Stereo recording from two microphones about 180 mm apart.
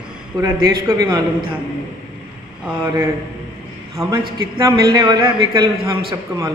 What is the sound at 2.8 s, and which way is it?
A man's voice, 20° right (ahead or behind).